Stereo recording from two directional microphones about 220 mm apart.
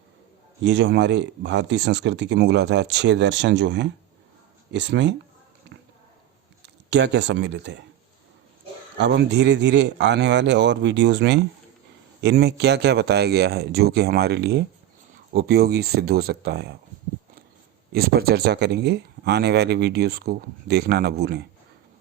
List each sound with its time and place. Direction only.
0.6 s speech: 55° right (ahead or behind)
6.9 s speech: 50° right (ahead or behind)
9.0 s speech: 50° right (ahead or behind)
17.9 s speech: 45° right (ahead or behind)